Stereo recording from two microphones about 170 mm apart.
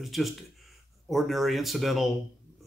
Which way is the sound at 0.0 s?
Centre (ahead or behind).